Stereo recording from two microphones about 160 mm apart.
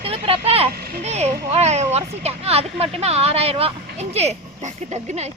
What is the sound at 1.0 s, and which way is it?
A woman's voice, 45° right (ahead or behind).